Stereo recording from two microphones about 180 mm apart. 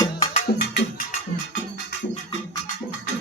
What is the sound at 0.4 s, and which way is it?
Music, 65° left (ahead or behind).